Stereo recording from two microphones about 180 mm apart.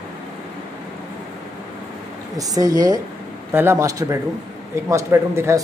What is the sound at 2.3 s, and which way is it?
A man's voice, 20° right (ahead or behind).